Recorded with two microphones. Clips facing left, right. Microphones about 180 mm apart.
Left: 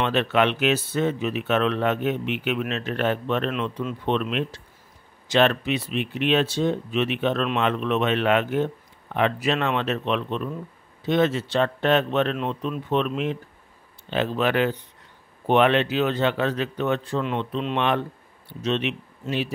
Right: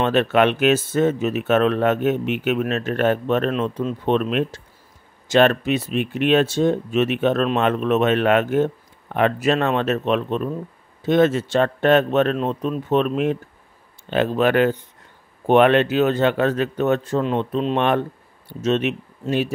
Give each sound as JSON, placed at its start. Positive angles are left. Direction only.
{"t": 0.0, "sound": "speech", "side_deg": -50}